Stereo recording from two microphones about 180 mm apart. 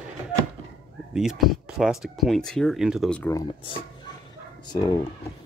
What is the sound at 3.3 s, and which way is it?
Speech, 25° left (ahead or behind).